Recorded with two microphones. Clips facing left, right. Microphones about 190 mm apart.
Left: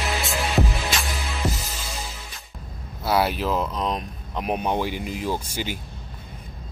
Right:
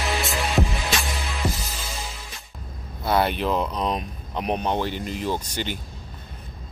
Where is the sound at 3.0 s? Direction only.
5° left (ahead or behind).